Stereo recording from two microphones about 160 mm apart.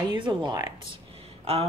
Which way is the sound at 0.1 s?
30° right (ahead or behind).